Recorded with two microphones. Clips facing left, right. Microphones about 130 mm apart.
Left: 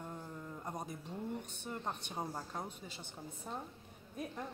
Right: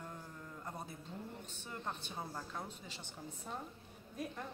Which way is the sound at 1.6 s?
15° left (ahead or behind).